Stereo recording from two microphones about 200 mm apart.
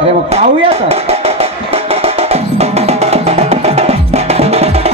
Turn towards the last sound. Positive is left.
turn(degrees=-30)  # may be behind; listen again after turning